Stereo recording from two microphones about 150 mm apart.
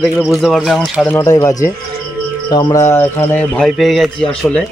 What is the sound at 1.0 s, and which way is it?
Speech, 20° left (ahead or behind).